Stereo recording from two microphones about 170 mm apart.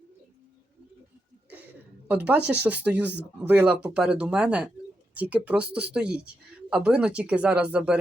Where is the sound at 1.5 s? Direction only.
10° right (ahead or behind).